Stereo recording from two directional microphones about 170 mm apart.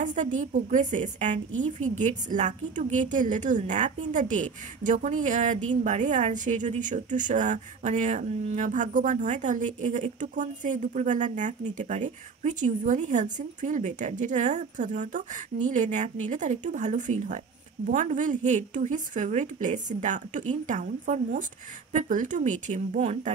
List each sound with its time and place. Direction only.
0.0 s a woman's voice: 45° right (ahead or behind)